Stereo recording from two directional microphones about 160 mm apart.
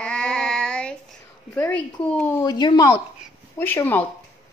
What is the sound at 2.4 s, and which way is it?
Speech, 25° left (ahead or behind).